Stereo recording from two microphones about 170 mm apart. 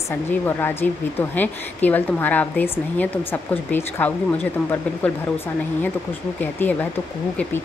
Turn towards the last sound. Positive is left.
turn(degrees=10)  # may be behind; listen again after turning